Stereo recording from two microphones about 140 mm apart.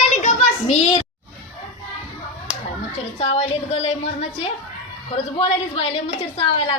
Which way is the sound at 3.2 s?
45° left (ahead or behind).